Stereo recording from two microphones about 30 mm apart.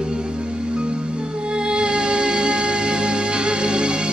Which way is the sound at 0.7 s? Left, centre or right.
Right.